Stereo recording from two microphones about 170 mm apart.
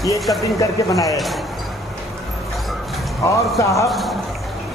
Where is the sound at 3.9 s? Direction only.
Centre (ahead or behind).